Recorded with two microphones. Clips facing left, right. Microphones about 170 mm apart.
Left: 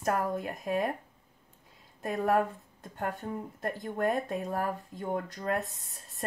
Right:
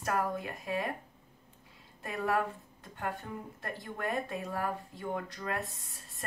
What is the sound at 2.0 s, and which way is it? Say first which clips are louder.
A woman's voice: left 5 dB; 40° left (ahead or behind).